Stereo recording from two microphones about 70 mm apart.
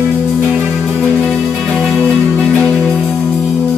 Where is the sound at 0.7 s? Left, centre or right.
Centre.